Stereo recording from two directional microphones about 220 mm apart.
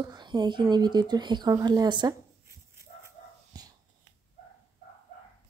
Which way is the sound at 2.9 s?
35° left (ahead or behind).